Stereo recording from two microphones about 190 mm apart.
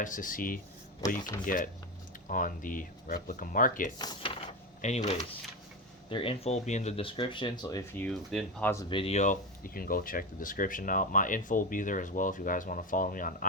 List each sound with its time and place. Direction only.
0.0 s speech: 45° left (ahead or behind)
3.9 s speech: 25° left (ahead or behind)
4.8 s speech: 35° left (ahead or behind); by 8.0 s 20° left (ahead or behind)
8.0 s speech: 5° left (ahead or behind)
8.7 s speech: 20° left (ahead or behind); by 13.5 s 45° left (ahead or behind)